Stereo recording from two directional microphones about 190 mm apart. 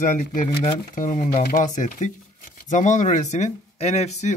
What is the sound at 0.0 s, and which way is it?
Speech, 45° left (ahead or behind).